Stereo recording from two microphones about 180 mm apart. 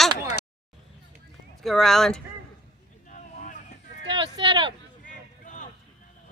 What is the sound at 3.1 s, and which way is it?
Vehicle, 45° left (ahead or behind).